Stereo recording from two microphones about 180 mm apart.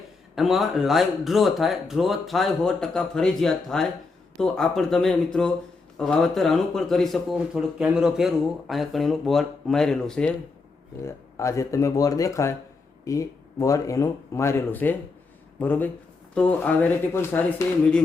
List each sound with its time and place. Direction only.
0.3 s speech: centre (ahead or behind)
11.0 s speech: 15° left (ahead or behind)